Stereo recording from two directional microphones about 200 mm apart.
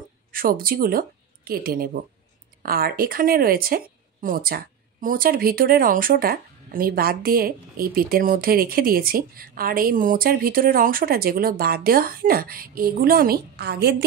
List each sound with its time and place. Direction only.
0.3 s a woman's voice: 45° right (ahead or behind)